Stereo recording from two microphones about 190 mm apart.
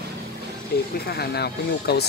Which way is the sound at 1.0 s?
60° left (ahead or behind).